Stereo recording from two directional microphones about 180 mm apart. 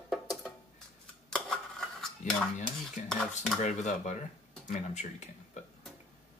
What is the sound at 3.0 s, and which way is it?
Cutlery, 40° left (ahead or behind).